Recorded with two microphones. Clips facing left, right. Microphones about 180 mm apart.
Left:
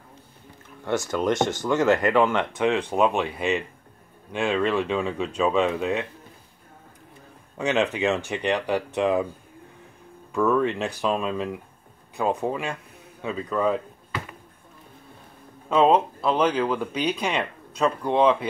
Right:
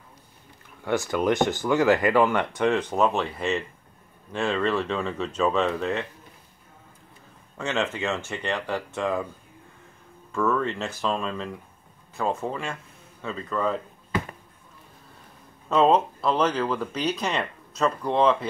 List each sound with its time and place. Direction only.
1.6 s speech: centre (ahead or behind)
7.5 s speech: 15° left (ahead or behind)
10.3 s speech: 15° left (ahead or behind)
15.7 s speech: 5° left (ahead or behind)